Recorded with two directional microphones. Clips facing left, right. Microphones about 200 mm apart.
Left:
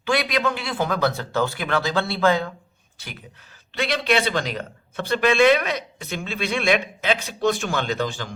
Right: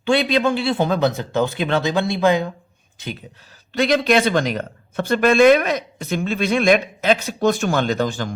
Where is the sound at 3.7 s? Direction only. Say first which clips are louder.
Right 6 dB; 45° right (ahead or behind).